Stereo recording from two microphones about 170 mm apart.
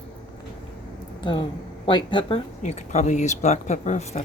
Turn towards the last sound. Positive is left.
turn(degrees=40)  # may be behind; listen again after turning